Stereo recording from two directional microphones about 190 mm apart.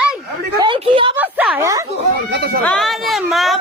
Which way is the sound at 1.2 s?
10° right (ahead or behind).